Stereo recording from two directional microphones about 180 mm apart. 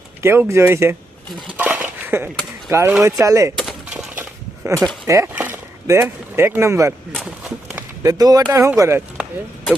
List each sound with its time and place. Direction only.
0.2 s speech: 15° right (ahead or behind)
1.3 s cutlery: 10° right (ahead or behind)
3.6 s a sound: 5° right (ahead or behind)
5.0 s speech: 15° right (ahead or behind)
8.0 s speech: 20° right (ahead or behind)